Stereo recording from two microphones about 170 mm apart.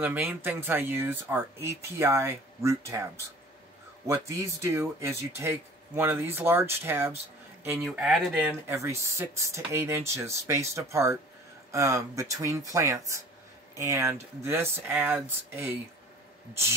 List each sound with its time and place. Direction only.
0.0 s speech: 10° right (ahead or behind)
8.6 s speech: 15° right (ahead or behind)